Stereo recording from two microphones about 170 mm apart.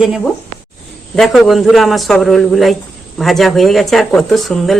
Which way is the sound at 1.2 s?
Centre (ahead or behind).